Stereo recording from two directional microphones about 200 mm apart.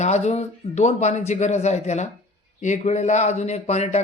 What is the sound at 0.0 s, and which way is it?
Speech, 35° left (ahead or behind).